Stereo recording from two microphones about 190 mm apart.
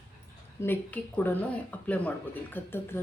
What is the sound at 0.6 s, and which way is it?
Speech, 10° left (ahead or behind).